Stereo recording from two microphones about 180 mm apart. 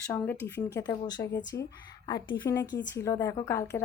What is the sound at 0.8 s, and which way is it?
A woman's voice, 20° left (ahead or behind).